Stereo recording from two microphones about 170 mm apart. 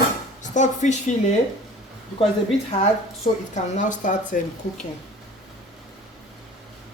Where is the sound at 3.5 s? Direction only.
45° left (ahead or behind).